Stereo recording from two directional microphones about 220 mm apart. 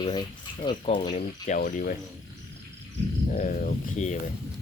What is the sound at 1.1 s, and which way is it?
Speech, 35° left (ahead or behind).